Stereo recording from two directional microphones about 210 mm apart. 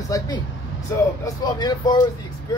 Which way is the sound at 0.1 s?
15° left (ahead or behind).